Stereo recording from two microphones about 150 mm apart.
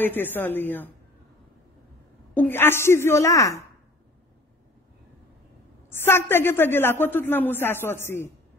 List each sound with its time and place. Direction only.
0.0 s a woman's voice: 15° left (ahead or behind)
2.3 s a woman's voice: 15° left (ahead or behind)
5.9 s a woman's voice: 15° left (ahead or behind)